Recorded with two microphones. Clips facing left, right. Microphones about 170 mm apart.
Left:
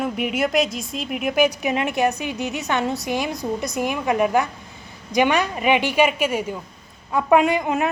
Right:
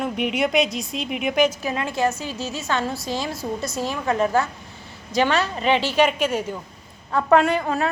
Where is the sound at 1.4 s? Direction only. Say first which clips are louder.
Left 3 dB; 20° left (ahead or behind).